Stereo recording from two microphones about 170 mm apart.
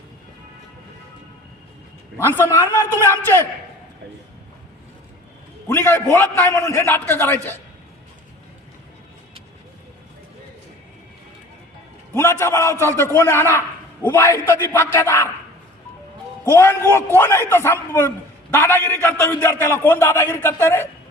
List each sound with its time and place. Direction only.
2.6 s a man's voice: 20° left (ahead or behind)
5.6 s a man's voice: 15° left (ahead or behind)
12.1 s a man's voice: 15° left (ahead or behind)
16.5 s a man's voice: 15° left (ahead or behind)